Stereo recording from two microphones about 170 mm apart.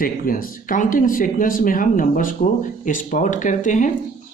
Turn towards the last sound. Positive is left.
turn(degrees=50)  # may be behind; listen again after turning